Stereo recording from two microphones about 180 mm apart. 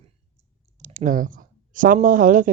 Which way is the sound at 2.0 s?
50° right (ahead or behind).